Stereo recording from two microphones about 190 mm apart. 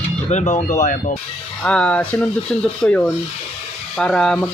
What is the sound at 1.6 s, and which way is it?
Speech, 5° left (ahead or behind).